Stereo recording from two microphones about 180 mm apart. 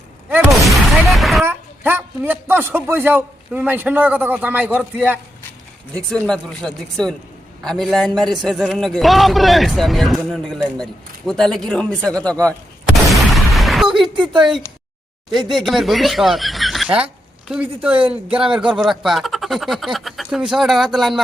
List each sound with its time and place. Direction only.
0.6 s a sound: centre (ahead or behind)
1.5 s speech: 10° right (ahead or behind)
5.9 s a man's voice: 5° left (ahead or behind)
13.1 s a sound: centre (ahead or behind)
15.3 s speech: centre (ahead or behind)
18.3 s speech: 30° right (ahead or behind)
18.5 s a man's voice: 5° right (ahead or behind)